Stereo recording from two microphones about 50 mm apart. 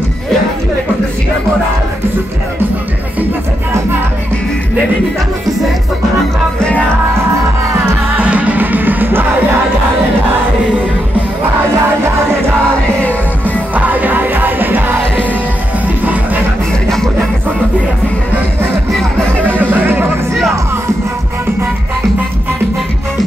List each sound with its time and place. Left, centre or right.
8.2 s music: right
13.7 s music: right
19.6 s music: right